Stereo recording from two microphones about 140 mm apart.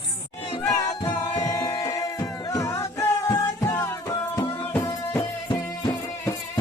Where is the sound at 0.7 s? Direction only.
25° left (ahead or behind).